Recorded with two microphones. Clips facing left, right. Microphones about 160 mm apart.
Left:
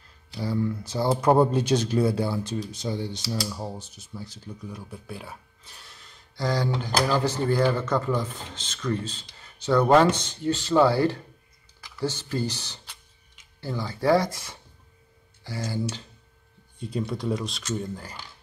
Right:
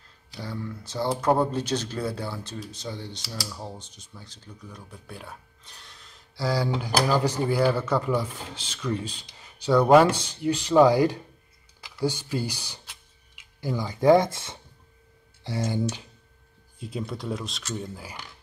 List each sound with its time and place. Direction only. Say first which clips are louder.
0.4 s speech: left 8 dB; 10° left (ahead or behind); by 15.8 s 25° right (ahead or behind)
16.8 s speech: left 4 dB; centre (ahead or behind)